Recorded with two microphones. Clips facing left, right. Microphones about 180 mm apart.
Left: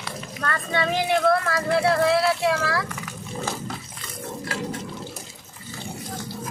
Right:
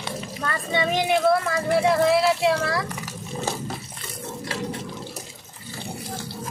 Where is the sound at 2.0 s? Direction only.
25° right (ahead or behind).